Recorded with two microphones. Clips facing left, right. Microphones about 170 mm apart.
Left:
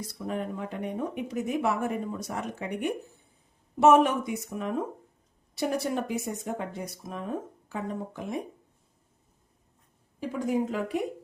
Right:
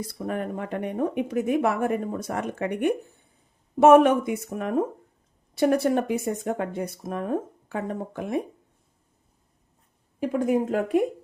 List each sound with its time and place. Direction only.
0.1 s speech: 55° right (ahead or behind)
10.2 s speech: 55° right (ahead or behind)